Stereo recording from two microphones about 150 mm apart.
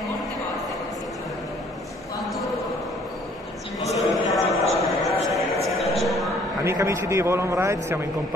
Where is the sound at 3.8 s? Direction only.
Centre (ahead or behind).